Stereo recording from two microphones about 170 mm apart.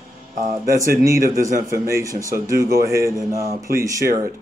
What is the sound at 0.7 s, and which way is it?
Speech, 20° right (ahead or behind).